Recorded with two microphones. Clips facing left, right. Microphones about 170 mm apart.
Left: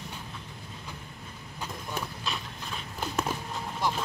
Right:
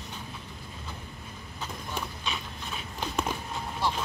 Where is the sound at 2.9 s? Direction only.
5° left (ahead or behind).